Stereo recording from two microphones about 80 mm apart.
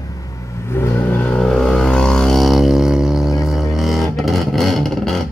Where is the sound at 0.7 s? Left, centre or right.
Left.